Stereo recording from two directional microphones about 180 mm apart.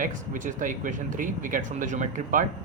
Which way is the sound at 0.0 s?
45° right (ahead or behind).